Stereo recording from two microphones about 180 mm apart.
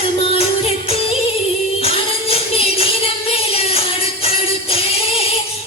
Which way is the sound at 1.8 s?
35° left (ahead or behind).